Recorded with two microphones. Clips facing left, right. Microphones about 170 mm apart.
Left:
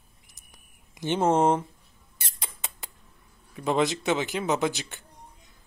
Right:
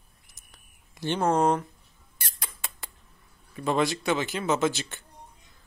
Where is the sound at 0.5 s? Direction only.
15° left (ahead or behind).